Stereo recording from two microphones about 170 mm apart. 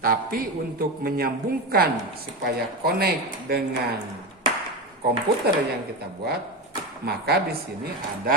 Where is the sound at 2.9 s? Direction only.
65° right (ahead or behind).